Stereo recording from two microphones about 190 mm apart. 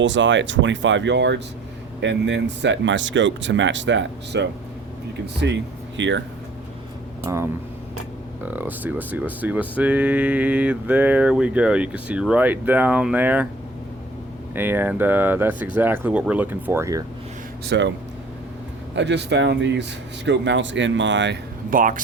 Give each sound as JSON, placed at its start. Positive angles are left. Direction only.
{"t": 0.0, "sound": "speech", "side_deg": -75}
{"t": 7.3, "sound": "speech", "side_deg": -15}
{"t": 14.5, "sound": "speech", "side_deg": -10}
{"t": 17.7, "sound": "speech", "side_deg": -70}
{"t": 18.9, "sound": "speech", "side_deg": -65}
{"t": 21.7, "sound": "speech", "side_deg": -45}